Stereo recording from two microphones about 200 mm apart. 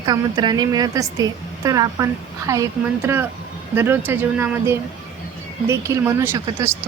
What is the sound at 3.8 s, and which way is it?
Speech, 10° right (ahead or behind).